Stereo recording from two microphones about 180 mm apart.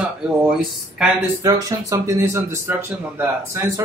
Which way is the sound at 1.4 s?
20° right (ahead or behind).